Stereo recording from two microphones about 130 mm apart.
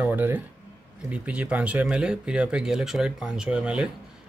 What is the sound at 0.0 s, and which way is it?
Speech, 15° right (ahead or behind).